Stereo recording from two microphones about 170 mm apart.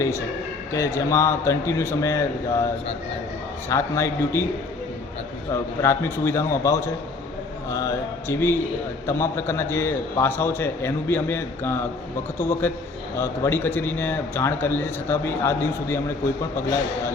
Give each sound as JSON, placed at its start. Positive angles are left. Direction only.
{"t": 0.7, "sound": "a man's voice", "side_deg": 15}
{"t": 3.7, "sound": "a man's voice", "side_deg": 15}
{"t": 5.8, "sound": "a man's voice", "side_deg": 15}